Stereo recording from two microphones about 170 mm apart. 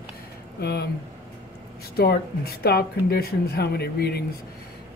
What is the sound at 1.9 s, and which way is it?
Speech, 65° left (ahead or behind).